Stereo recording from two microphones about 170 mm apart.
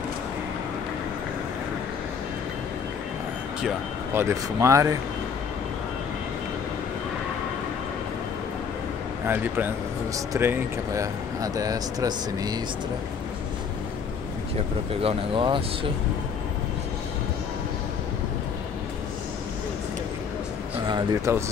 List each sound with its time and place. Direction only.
4.1 s speech: 15° right (ahead or behind)
9.3 s speech: 10° right (ahead or behind)
15.0 s speech: 30° right (ahead or behind)
21.3 s speech: 15° right (ahead or behind)